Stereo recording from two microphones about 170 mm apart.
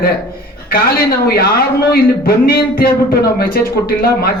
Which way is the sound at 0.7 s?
65° left (ahead or behind).